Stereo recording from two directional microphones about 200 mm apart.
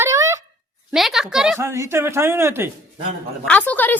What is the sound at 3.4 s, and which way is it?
Speech, 5° left (ahead or behind).